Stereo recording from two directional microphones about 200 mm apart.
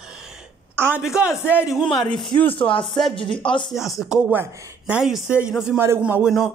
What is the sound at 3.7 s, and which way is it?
Speech, centre (ahead or behind).